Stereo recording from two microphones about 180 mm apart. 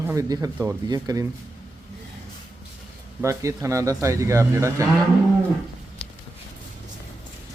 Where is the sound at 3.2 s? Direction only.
15° right (ahead or behind).